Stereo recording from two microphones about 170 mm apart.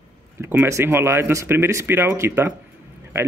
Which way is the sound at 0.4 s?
15° right (ahead or behind).